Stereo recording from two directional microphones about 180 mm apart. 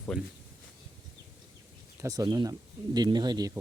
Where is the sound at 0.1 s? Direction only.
5° left (ahead or behind).